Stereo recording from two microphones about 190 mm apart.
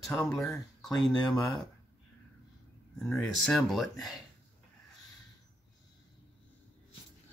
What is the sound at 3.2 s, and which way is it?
Speech, 5° left (ahead or behind).